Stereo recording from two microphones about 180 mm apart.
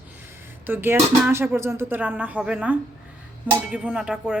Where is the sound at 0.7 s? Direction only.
10° right (ahead or behind).